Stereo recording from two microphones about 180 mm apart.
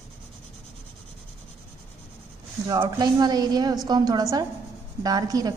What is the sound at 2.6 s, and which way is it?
A woman's voice, 20° right (ahead or behind).